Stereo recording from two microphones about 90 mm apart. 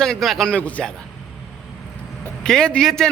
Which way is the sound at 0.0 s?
5° left (ahead or behind).